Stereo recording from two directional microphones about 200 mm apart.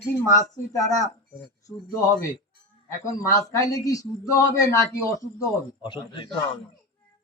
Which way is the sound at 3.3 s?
15° left (ahead or behind).